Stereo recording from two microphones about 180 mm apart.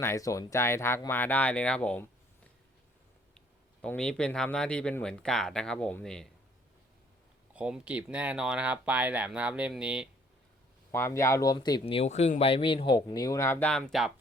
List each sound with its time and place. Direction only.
0.0 s speech: 15° left (ahead or behind)
3.3 s speech: 5° left (ahead or behind)
7.5 s speech: 5° right (ahead or behind)
10.9 s speech: 15° left (ahead or behind)